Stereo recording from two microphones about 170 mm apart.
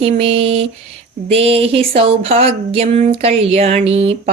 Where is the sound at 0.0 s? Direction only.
35° right (ahead or behind).